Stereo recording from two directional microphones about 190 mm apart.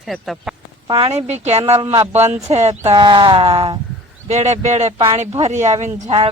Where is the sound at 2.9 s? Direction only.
25° right (ahead or behind).